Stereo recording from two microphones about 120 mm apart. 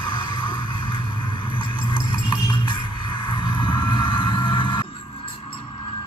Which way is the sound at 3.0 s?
45° left (ahead or behind).